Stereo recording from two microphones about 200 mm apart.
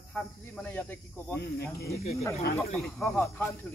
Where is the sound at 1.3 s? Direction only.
55° left (ahead or behind).